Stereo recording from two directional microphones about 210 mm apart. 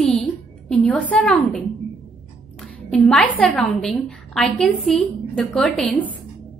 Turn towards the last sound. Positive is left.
turn(degrees=5)  # may be behind; listen again after turning